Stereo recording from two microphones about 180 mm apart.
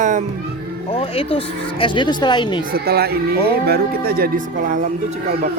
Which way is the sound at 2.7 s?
60° right (ahead or behind).